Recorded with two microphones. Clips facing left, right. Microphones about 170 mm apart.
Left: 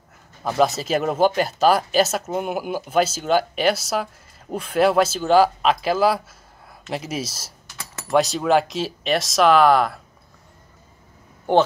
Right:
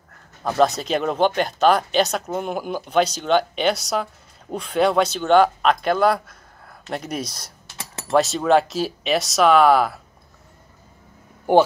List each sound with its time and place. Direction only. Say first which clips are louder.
0.4 s speech: right 1 dB; 5° left (ahead or behind)
7.6 s a sound: right 3 dB; 30° right (ahead or behind)
8.1 s speech: right 1 dB; centre (ahead or behind)
11.5 s a man's voice: right 2 dB; 10° right (ahead or behind)